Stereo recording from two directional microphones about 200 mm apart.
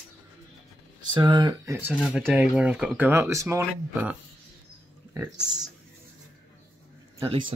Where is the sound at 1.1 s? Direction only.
20° right (ahead or behind).